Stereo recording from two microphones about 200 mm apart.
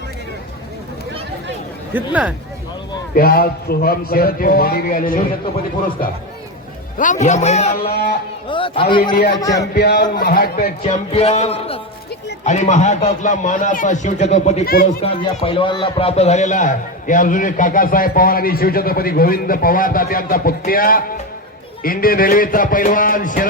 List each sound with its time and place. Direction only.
1.9 s speech: 10° right (ahead or behind)
3.2 s speech: 50° left (ahead or behind)
7.0 s a man's voice: 40° left (ahead or behind)
7.8 s speech: 50° left (ahead or behind)
8.4 s a man's voice: 25° left (ahead or behind)
9.7 s speech: 50° left (ahead or behind)
11.1 s a man's voice: 30° left (ahead or behind)
14.7 s speech: 50° left (ahead or behind)
15.0 s speech: 30° left (ahead or behind)